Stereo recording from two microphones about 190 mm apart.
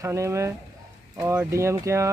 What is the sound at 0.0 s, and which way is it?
Speech, 15° right (ahead or behind).